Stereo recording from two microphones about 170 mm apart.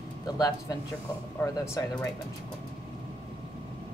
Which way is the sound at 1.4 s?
15° left (ahead or behind).